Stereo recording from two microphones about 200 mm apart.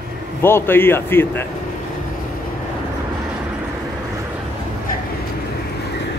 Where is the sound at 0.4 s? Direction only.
10° left (ahead or behind).